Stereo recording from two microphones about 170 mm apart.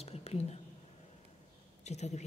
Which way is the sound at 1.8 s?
40° left (ahead or behind).